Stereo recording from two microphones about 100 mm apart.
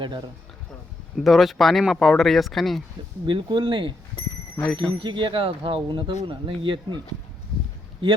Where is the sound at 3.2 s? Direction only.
55° right (ahead or behind).